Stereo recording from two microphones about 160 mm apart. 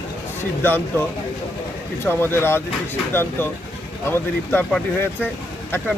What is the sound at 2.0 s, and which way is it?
Speech, 15° left (ahead or behind).